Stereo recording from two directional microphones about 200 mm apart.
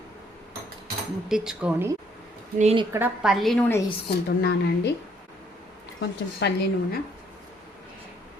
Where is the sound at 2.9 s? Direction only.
5° right (ahead or behind).